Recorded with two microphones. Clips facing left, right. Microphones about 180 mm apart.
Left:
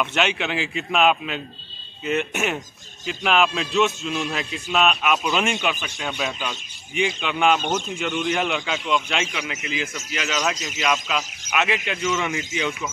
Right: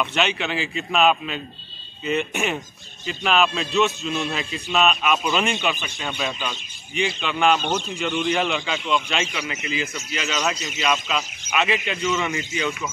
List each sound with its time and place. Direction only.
0.0 s speech: 10° left (ahead or behind)
7.6 s a man's voice: 45° left (ahead or behind)
8.0 s speech: 5° left (ahead or behind)